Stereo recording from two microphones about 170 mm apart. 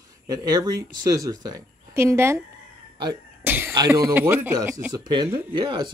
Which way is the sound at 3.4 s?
15° right (ahead or behind).